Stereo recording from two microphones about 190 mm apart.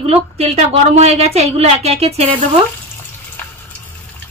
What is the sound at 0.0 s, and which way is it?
A woman's voice, 35° right (ahead or behind).